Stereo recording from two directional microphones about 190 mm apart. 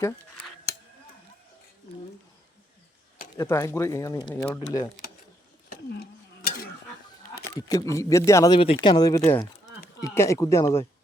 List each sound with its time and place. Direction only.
3.3 s speech: 15° left (ahead or behind)
5.6 s a sound: 55° left (ahead or behind)
7.7 s speech: 15° left (ahead or behind)
8.5 s speech: 30° left (ahead or behind); by 10.8 s 15° left (ahead or behind)